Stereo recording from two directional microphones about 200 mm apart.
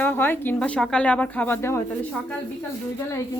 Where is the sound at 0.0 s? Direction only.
10° left (ahead or behind).